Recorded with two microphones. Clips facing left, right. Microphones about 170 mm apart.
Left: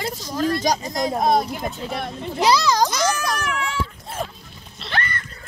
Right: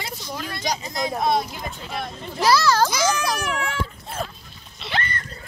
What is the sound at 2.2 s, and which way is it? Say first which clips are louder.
Speech: even; 20° left (ahead or behind).